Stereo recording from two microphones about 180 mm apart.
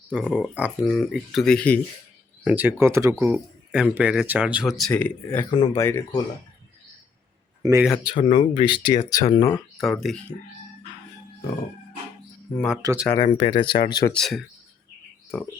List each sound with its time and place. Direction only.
0.1 s speech: 5° right (ahead or behind)
2.4 s speech: 10° right (ahead or behind)
4.8 s speech: 10° left (ahead or behind)
5.5 s speech: 25° left (ahead or behind)
7.6 s speech: 15° right (ahead or behind)
7.9 s speech: 25° left (ahead or behind)
9.7 s speech: centre (ahead or behind)
12.8 s speech: 20° right (ahead or behind)
13.2 s speech: 30° left (ahead or behind)
14.1 s speech: centre (ahead or behind)